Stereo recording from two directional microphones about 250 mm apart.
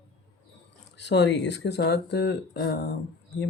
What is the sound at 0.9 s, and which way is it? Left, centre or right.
Speech, left.